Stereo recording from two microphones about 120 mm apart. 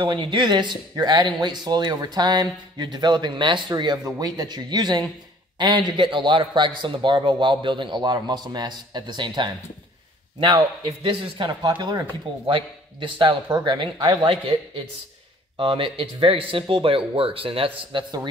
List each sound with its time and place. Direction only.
0.0 s speech: 45° right (ahead or behind)
11.0 s speech: 45° right (ahead or behind)
15.5 s speech: 45° right (ahead or behind)